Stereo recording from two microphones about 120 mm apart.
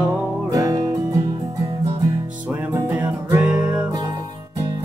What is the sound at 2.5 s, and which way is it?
Music, 15° right (ahead or behind).